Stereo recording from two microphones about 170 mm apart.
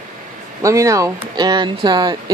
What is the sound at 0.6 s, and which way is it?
Speech, 20° right (ahead or behind).